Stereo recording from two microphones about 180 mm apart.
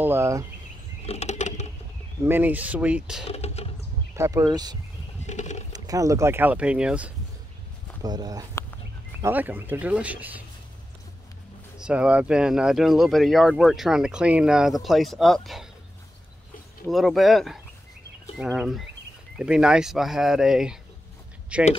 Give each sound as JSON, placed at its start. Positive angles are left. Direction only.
{"t": 0.0, "sound": "speech", "side_deg": -15}
{"t": 1.0, "sound": "patter", "side_deg": 35}
{"t": 2.2, "sound": "speech", "side_deg": -10}
{"t": 3.3, "sound": "a sound", "side_deg": 35}
{"t": 4.1, "sound": "speech", "side_deg": -15}
{"t": 5.2, "sound": "a sound", "side_deg": 40}
{"t": 5.7, "sound": "speech", "side_deg": -20}
{"t": 8.0, "sound": "speech", "side_deg": -20}
{"t": 9.2, "sound": "speech", "side_deg": -10}
{"t": 11.8, "sound": "speech", "side_deg": -5}
{"t": 16.9, "sound": "speech", "side_deg": 0}